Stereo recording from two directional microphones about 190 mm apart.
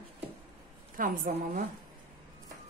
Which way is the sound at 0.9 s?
45° right (ahead or behind).